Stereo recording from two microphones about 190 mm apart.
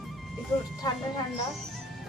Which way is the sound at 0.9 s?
20° left (ahead or behind).